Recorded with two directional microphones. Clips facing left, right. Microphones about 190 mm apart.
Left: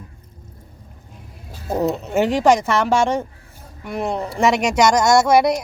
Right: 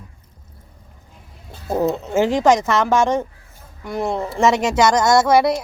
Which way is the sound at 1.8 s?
20° left (ahead or behind).